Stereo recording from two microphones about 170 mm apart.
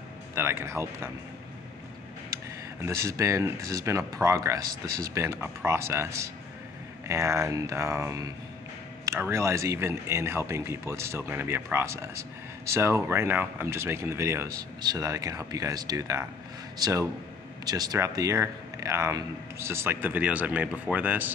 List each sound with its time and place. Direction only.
0.3 s speech: 15° right (ahead or behind)
2.8 s speech: 20° right (ahead or behind)